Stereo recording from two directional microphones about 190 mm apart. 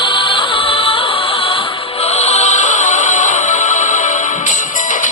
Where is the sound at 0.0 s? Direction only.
25° left (ahead or behind).